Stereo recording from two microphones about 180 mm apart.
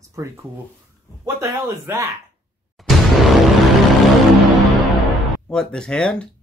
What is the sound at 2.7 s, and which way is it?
Music, centre (ahead or behind).